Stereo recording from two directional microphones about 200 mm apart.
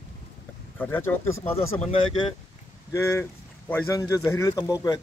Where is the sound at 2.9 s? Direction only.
15° left (ahead or behind).